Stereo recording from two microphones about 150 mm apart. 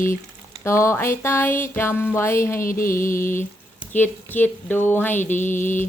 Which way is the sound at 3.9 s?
10° left (ahead or behind).